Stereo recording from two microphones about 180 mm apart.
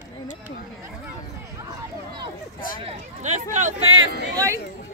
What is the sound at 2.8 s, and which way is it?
Speech, 40° right (ahead or behind).